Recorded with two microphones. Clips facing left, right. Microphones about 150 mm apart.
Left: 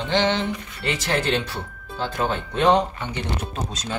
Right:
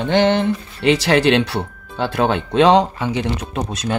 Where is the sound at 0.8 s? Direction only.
80° right.